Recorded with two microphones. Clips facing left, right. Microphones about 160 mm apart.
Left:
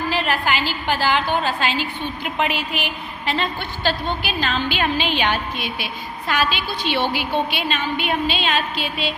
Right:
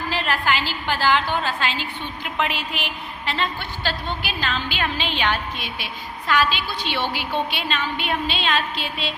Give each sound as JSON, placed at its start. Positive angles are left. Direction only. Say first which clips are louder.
{"t": 0.1, "sound": "a woman's voice", "louder": "even", "side_deg": 15}